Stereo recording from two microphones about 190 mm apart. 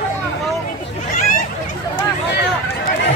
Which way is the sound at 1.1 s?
45° left (ahead or behind).